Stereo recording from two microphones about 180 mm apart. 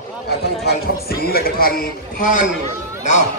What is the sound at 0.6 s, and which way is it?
A man's voice, 60° left (ahead or behind).